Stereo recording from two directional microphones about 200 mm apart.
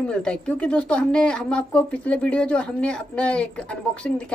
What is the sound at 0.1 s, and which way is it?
A woman's voice, 5° left (ahead or behind).